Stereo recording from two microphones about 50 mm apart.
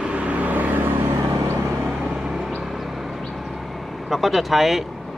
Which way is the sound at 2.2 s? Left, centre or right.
Centre.